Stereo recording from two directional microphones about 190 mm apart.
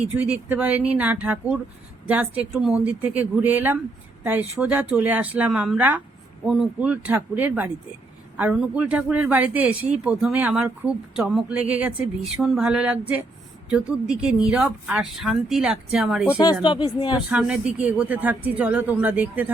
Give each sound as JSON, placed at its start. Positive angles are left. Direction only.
{"t": 0.0, "sound": "speech", "side_deg": -5}
{"t": 16.3, "sound": "speech", "side_deg": 20}
{"t": 17.2, "sound": "speech", "side_deg": -5}